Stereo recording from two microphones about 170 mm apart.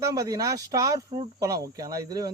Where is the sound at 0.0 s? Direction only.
20° right (ahead or behind).